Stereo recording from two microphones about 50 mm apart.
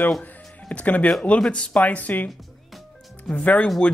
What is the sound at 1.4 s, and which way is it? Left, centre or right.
Speech, centre.